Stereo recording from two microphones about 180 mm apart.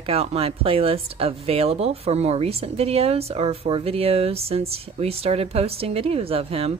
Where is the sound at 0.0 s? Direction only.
35° right (ahead or behind).